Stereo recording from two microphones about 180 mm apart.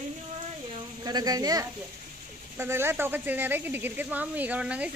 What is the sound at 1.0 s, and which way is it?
Speech, 20° right (ahead or behind).